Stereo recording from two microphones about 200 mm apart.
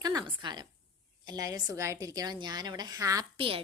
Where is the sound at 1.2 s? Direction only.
20° right (ahead or behind).